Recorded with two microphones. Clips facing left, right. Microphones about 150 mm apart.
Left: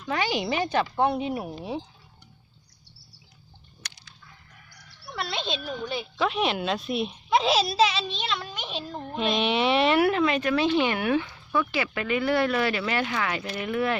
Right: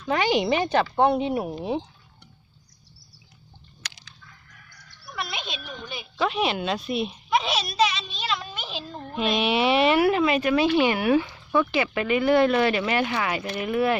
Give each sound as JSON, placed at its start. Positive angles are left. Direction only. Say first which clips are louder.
{"t": 0.0, "sound": "speech", "louder": "right 5 dB", "side_deg": -25}
{"t": 3.8, "sound": "a sound", "louder": "right 4 dB", "side_deg": -90}
{"t": 4.9, "sound": "a sound", "louder": "left 1 dB", "side_deg": 30}
{"t": 6.1, "sound": "speech", "louder": "right 2 dB", "side_deg": 0}
{"t": 7.3, "sound": "a child's voice", "louder": "left 4 dB", "side_deg": 30}
{"t": 8.3, "sound": "music", "louder": "right 1 dB", "side_deg": -5}
{"t": 9.1, "sound": "speech", "louder": "right 2 dB", "side_deg": -5}
{"t": 11.5, "sound": "speech", "louder": "right 4 dB", "side_deg": -25}